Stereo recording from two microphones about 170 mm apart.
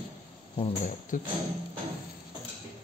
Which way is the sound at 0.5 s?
35° left (ahead or behind).